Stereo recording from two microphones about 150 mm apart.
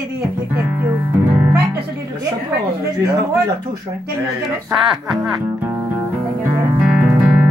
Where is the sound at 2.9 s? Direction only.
25° right (ahead or behind).